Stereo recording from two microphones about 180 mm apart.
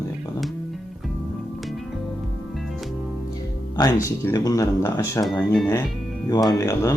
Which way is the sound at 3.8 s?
15° left (ahead or behind).